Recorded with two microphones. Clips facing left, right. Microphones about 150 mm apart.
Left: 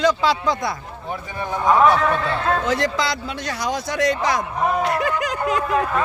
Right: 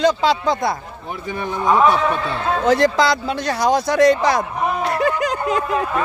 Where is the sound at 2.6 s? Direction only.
35° right (ahead or behind).